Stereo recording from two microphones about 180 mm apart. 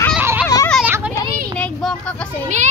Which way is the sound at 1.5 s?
5° left (ahead or behind).